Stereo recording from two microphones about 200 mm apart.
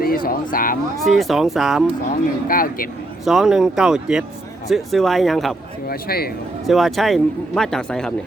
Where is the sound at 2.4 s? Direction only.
45° left (ahead or behind).